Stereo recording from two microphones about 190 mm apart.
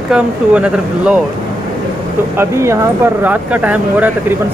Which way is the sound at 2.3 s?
15° right (ahead or behind).